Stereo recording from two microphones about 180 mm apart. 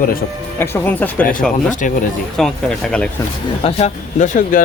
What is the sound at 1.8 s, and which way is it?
Speech, 45° left (ahead or behind).